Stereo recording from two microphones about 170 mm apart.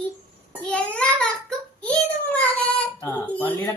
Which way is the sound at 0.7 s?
5° left (ahead or behind).